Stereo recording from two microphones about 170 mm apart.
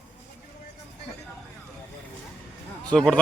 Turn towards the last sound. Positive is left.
turn(degrees=5)  # may be behind; listen again after turning